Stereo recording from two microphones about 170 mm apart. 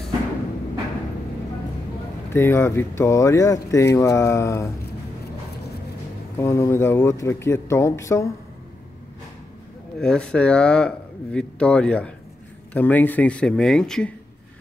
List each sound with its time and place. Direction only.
2.3 s speech: 15° left (ahead or behind)
6.3 s speech: 15° left (ahead or behind)
9.9 s a man's voice: 5° left (ahead or behind)